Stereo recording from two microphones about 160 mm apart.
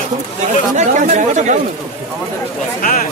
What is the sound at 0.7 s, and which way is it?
Speech, 45° right (ahead or behind).